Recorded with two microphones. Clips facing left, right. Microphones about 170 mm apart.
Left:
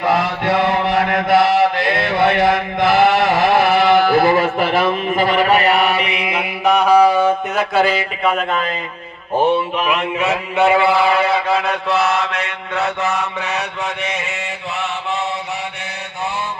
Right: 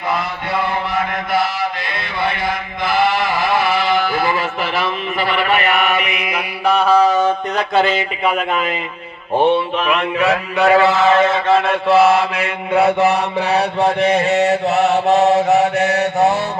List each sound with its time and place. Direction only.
0.1 s chant: 80° left; by 7.3 s 10° left (ahead or behind)
7.8 s speech: centre (ahead or behind)
9.9 s mantra: 20° left (ahead or behind)
11.7 s speech: 5° right (ahead or behind)
12.7 s mantra: 30° right (ahead or behind)